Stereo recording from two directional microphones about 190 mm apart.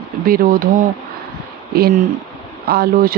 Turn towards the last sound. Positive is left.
turn(degrees=-55)  # may be behind; listen again after turning